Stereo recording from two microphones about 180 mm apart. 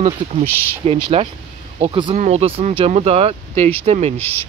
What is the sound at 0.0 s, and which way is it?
Speech, 35° right (ahead or behind).